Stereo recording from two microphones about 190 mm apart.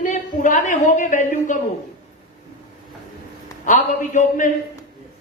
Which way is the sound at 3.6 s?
40° left (ahead or behind).